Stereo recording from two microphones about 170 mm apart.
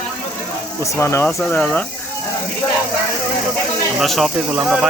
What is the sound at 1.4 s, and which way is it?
Speech, 5° left (ahead or behind).